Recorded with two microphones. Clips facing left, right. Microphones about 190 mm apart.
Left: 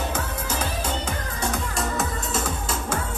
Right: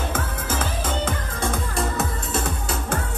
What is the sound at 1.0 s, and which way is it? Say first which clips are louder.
Music: right 2 dB; 55° right (ahead or behind).